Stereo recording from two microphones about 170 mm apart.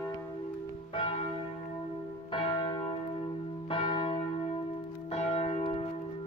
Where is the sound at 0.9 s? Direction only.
30° left (ahead or behind).